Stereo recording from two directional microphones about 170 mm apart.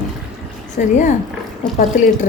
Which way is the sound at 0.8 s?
60° left (ahead or behind).